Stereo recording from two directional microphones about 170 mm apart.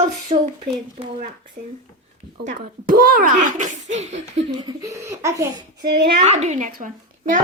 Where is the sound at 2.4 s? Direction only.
55° right (ahead or behind); by 4.4 s 40° right (ahead or behind).